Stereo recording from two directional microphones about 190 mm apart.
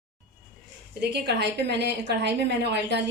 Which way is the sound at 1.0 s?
60° right (ahead or behind).